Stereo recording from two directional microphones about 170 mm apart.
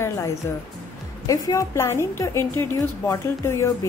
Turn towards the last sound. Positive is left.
turn(degrees=15)  # may be behind; listen again after turning